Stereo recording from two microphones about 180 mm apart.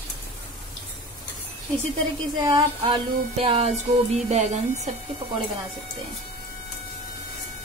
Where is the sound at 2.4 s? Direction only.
25° right (ahead or behind).